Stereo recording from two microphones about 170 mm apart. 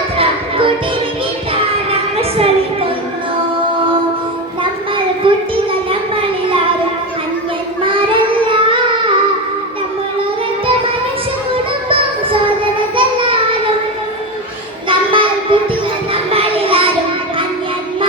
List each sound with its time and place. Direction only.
0.2 s music: 30° right (ahead or behind)
2.1 s a sound: 35° right (ahead or behind)
4.6 s child singing: 30° right (ahead or behind)
7.9 s child singing: 30° right (ahead or behind)
11.5 s music: 30° right (ahead or behind)
13.0 s child singing: 30° right (ahead or behind)
14.8 s child singing: 30° right (ahead or behind)